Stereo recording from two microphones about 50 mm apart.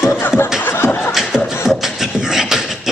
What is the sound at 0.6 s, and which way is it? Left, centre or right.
Beatboxing, left.